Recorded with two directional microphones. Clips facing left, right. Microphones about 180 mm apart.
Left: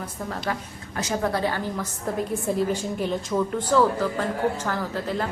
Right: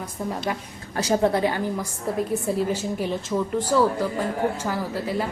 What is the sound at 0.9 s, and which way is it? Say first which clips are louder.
Speech: right 5 dB; 35° right (ahead or behind).